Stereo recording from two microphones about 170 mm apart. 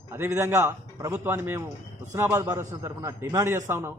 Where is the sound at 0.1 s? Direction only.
15° right (ahead or behind).